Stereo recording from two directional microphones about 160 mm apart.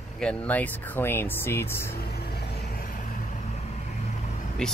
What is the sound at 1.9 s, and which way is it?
Vehicle, 75° left (ahead or behind).